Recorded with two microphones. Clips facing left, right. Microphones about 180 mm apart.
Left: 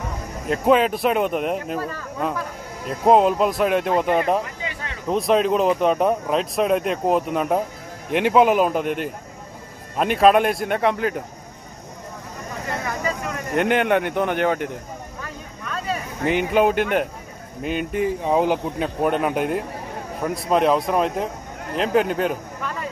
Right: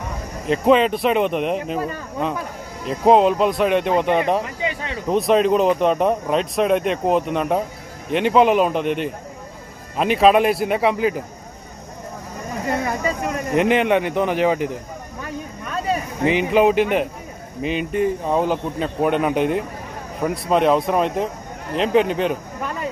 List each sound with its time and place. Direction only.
0.5 s speech: 5° left (ahead or behind)
1.8 s speech: 20° right (ahead or behind)
2.9 s speech: 5° left (ahead or behind)
12.8 s a sound: 25° right (ahead or behind)
13.5 s speech: centre (ahead or behind)
16.3 s speech: centre (ahead or behind)
18.9 s speech: centre (ahead or behind)